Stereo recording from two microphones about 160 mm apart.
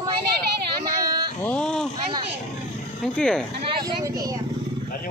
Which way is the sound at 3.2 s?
5° left (ahead or behind).